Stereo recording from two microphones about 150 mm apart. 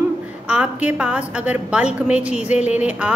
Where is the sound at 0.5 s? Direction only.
10° right (ahead or behind).